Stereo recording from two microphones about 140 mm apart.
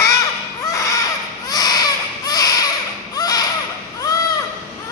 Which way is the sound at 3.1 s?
25° left (ahead or behind).